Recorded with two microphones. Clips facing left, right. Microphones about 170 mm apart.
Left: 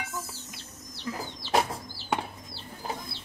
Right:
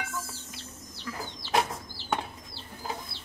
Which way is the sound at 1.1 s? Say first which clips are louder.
Left 3 dB; 25° left (ahead or behind).